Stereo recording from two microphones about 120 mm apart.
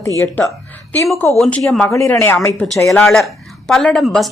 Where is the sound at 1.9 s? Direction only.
25° left (ahead or behind).